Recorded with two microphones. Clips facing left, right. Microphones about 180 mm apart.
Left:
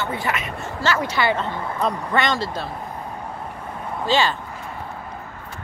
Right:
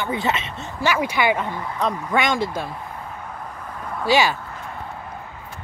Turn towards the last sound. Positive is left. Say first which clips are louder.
# right 2 dB
turn(degrees=-10)  # may be behind; listen again after turning